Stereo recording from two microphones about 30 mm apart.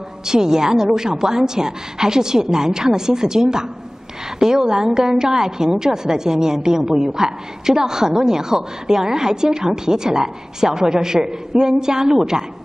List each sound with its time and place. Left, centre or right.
0.2 s a woman's voice: centre